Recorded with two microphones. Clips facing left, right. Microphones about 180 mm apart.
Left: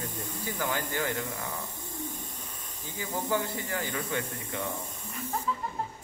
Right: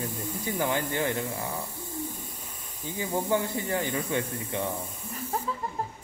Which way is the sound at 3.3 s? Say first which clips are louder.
Right 1 dB; 25° right (ahead or behind).